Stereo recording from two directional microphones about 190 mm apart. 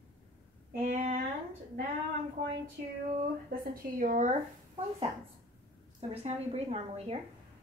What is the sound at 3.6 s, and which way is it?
Speech, 50° right (ahead or behind).